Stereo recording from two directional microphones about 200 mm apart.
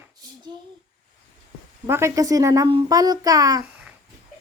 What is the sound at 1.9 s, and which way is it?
A child's voice, 15° right (ahead or behind).